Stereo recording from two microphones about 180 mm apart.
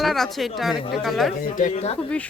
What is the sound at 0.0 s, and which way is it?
Speech, centre (ahead or behind).